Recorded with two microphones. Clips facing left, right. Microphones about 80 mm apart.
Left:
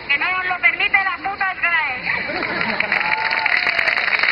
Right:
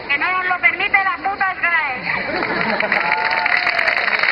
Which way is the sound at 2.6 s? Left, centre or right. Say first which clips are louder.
Right 3 dB; centre.